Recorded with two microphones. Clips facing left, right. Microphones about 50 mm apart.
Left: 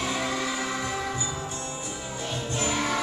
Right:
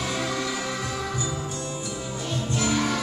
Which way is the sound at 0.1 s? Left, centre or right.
Left.